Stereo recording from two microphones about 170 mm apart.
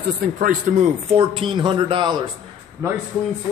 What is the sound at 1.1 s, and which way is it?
Speech, 30° right (ahead or behind).